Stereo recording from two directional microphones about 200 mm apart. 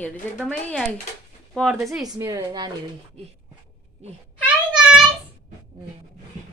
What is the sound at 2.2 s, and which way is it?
Speech, 15° right (ahead or behind).